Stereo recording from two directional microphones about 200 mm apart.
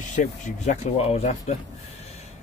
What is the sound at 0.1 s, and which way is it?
Speech, 35° left (ahead or behind).